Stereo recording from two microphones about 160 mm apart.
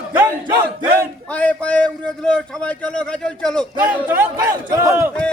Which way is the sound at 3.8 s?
10° right (ahead or behind).